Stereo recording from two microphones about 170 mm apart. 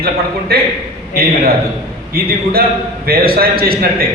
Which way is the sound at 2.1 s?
65° right (ahead or behind).